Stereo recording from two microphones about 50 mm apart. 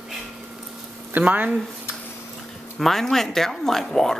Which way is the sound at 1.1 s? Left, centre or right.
Right.